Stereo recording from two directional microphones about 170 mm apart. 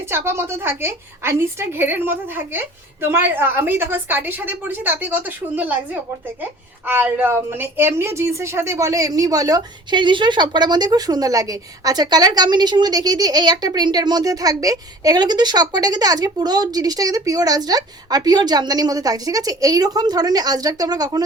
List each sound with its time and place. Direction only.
0.0 s a woman's voice: 15° right (ahead or behind)